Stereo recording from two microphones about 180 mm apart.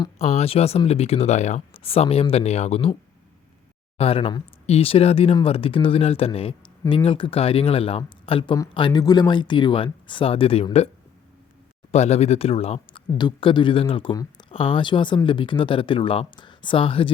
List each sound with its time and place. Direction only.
0.2 s speech: 35° left (ahead or behind)
3.9 s speech: 30° left (ahead or behind)
11.9 s speech: 35° left (ahead or behind)